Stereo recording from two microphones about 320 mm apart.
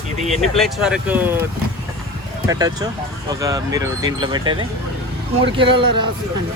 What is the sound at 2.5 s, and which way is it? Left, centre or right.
Speech, centre.